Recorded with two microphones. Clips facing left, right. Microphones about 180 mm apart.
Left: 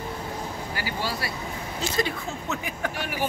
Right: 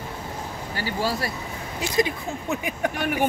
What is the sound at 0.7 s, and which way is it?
Speech, 35° right (ahead or behind).